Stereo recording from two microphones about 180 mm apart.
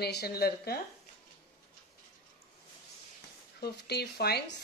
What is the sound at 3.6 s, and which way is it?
Speech, 65° left (ahead or behind).